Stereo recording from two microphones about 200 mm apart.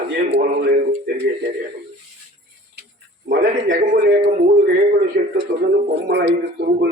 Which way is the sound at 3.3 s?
45° right (ahead or behind).